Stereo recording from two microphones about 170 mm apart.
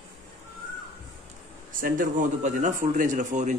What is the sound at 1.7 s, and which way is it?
Speech, 55° right (ahead or behind).